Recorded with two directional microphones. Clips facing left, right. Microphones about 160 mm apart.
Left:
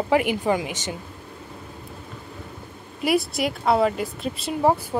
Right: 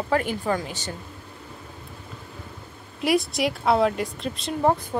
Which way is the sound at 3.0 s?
Centre (ahead or behind).